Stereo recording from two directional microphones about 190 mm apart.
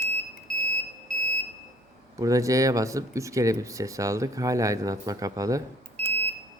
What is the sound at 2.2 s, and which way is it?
A man's voice, 15° right (ahead or behind).